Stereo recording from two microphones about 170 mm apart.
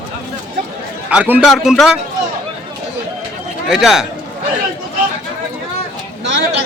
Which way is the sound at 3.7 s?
Centre (ahead or behind).